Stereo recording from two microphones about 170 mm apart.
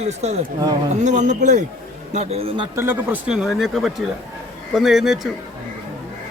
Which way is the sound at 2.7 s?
10° right (ahead or behind).